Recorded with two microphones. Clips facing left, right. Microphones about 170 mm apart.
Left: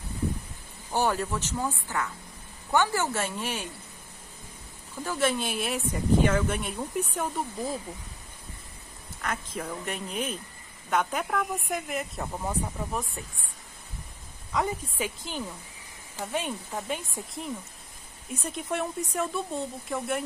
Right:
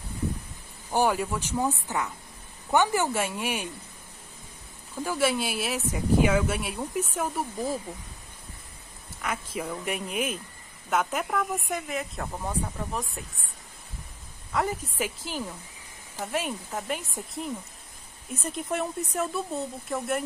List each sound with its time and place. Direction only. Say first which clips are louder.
0.9 s speech: right 2 dB; 10° right (ahead or behind)
5.0 s speech: right 1 dB; 10° right (ahead or behind)
9.2 s speech: right 1 dB; 10° right (ahead or behind)
14.5 s speech: right 1 dB; 5° right (ahead or behind)